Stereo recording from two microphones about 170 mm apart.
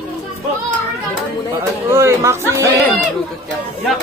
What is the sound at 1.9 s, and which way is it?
Speech, 15° right (ahead or behind).